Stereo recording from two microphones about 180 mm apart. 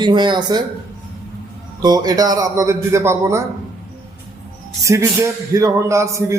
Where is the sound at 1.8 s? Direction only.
20° right (ahead or behind).